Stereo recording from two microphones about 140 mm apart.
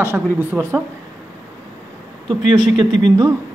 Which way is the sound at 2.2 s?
30° right (ahead or behind).